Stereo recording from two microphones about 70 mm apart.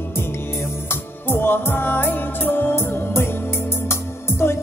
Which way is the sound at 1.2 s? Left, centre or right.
Left.